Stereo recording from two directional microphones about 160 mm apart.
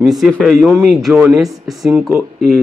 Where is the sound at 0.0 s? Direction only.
Centre (ahead or behind).